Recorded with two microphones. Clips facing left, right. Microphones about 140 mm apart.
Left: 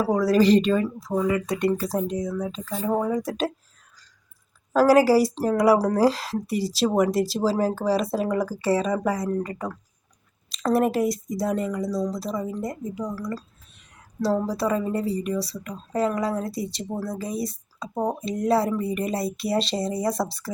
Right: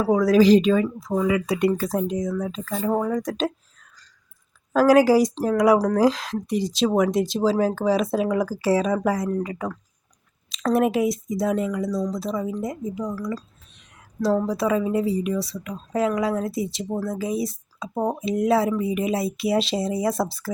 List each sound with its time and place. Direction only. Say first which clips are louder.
0.1 s speech: right 3 dB; centre (ahead or behind)
1.7 s speech: right 1 dB; centre (ahead or behind)
4.7 s speech: right 1 dB; centre (ahead or behind)